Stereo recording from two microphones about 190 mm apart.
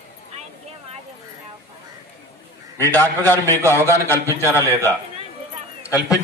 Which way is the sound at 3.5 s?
15° right (ahead or behind).